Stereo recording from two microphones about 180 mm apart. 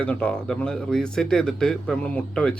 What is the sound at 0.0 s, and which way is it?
Speech, 5° left (ahead or behind).